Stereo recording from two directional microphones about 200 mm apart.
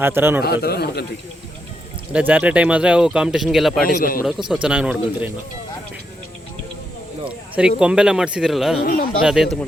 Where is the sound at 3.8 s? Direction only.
45° left (ahead or behind).